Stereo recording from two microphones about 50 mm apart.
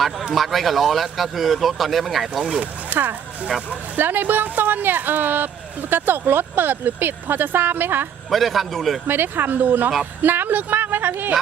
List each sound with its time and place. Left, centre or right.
0.3 s speech: centre
2.4 s speech: right
2.9 s speech: right
8.3 s speech: centre
9.0 s speech: right